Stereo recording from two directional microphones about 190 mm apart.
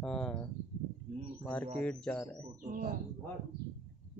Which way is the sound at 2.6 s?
50° right (ahead or behind).